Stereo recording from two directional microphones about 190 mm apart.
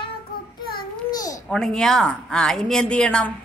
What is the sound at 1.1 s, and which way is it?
Babbling, 20° left (ahead or behind).